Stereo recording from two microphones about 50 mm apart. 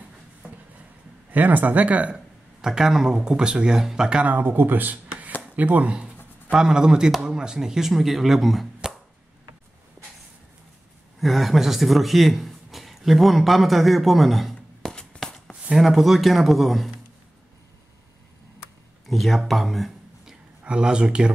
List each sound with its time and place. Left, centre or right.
1.3 s speech: right
2.6 s speech: centre
4.2 s speech: right; by 8.9 s centre
11.1 s speech: centre
14.9 s a sound: centre
15.7 s speech: centre
19.0 s speech: centre
20.6 s speech: centre